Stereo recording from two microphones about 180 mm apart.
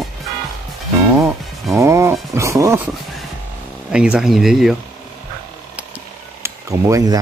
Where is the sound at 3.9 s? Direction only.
5° right (ahead or behind).